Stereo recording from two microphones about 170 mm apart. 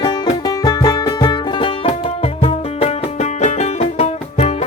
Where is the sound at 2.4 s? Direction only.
40° left (ahead or behind).